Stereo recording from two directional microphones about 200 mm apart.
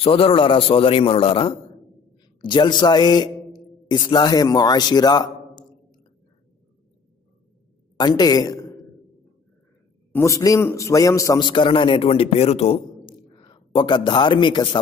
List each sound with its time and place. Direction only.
0.0 s a man's voice: 25° left (ahead or behind)
8.0 s a woman's voice: 20° left (ahead or behind)
10.1 s a man's voice: 15° left (ahead or behind)